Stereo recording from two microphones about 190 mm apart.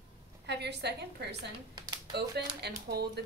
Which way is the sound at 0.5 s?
60° right (ahead or behind).